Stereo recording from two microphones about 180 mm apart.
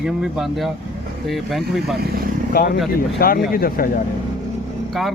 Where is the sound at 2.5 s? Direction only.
55° left (ahead or behind).